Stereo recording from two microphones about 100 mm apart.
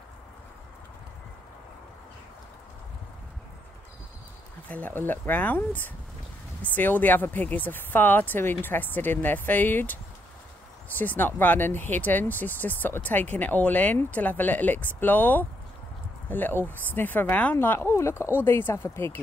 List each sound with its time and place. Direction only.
4.6 s speech: 15° left (ahead or behind)